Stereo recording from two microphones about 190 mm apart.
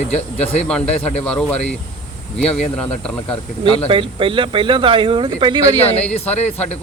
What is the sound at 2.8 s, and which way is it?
Speech, 5° left (ahead or behind).